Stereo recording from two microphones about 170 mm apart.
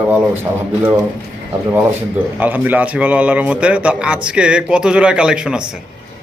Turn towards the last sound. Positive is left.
turn(degrees=-5)  # may be behind; listen again after turning